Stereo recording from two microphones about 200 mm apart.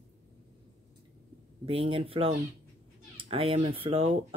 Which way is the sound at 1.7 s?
30° right (ahead or behind).